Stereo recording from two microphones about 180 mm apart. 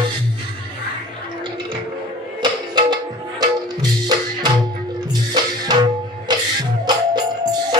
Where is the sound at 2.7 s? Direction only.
25° right (ahead or behind).